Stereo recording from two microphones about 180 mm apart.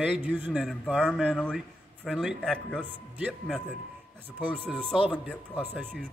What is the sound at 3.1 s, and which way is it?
Speech, 5° right (ahead or behind).